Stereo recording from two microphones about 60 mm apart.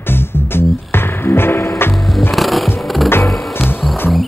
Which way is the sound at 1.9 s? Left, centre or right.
Centre.